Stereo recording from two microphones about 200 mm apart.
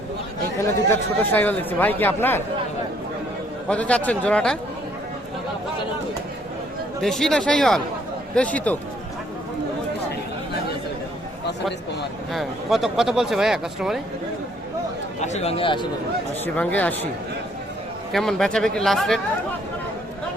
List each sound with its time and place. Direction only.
0.9 s speech: 10° left (ahead or behind)
3.7 s speech: 5° left (ahead or behind)
7.0 s speech: centre (ahead or behind)
12.3 s speech: centre (ahead or behind)
15.2 s speech: 35° left (ahead or behind)
16.6 s speech: 5° left (ahead or behind)
18.1 s speech: centre (ahead or behind)